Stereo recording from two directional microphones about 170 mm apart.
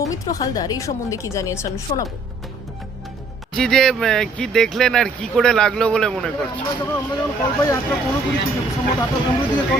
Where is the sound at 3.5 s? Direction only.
5° left (ahead or behind).